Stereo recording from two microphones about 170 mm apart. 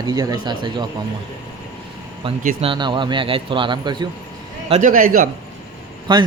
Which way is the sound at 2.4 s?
30° right (ahead or behind).